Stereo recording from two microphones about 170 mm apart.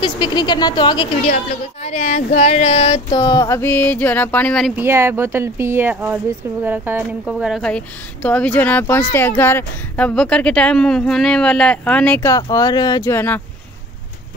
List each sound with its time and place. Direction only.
0.0 s speech: 25° left (ahead or behind)
1.2 s speech: 40° left (ahead or behind); by 4.7 s 5° left (ahead or behind)
4.7 s speech: 15° right (ahead or behind); by 13.4 s 15° left (ahead or behind)